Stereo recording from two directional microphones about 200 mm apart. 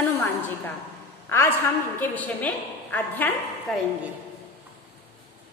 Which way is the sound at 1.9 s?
10° left (ahead or behind).